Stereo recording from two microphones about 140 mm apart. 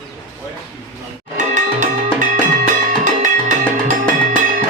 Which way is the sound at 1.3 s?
65° right (ahead or behind).